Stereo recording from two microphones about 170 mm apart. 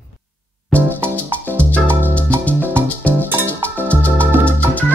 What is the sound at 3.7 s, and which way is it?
Music, 10° left (ahead or behind).